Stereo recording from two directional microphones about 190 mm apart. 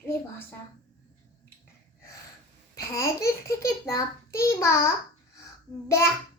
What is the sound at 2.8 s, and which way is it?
A child's voice, 15° left (ahead or behind).